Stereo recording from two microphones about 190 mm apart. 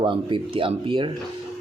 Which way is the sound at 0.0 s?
25° right (ahead or behind).